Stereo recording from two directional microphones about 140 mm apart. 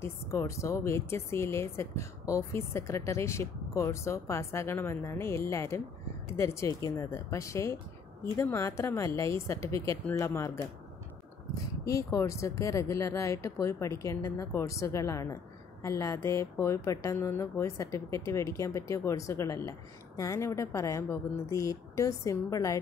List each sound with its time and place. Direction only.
0.0 s speech: 20° left (ahead or behind)
11.8 s speech: 25° left (ahead or behind)